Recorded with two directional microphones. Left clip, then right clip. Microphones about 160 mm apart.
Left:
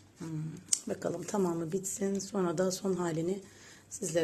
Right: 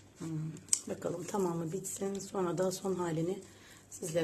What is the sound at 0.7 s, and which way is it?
A woman's voice, 25° left (ahead or behind).